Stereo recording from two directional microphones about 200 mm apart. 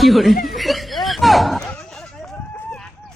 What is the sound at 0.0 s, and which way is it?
Speech, centre (ahead or behind).